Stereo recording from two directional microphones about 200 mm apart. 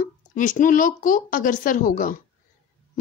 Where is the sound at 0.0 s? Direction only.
40° left (ahead or behind).